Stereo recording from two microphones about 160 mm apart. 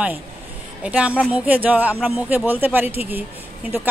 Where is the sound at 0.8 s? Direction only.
10° right (ahead or behind).